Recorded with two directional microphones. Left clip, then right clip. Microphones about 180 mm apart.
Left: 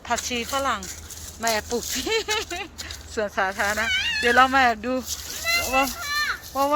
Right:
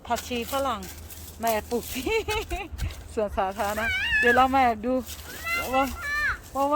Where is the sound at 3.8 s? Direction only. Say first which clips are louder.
Even; 35° left (ahead or behind).